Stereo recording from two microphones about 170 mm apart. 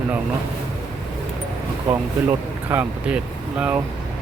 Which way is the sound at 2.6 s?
10° right (ahead or behind).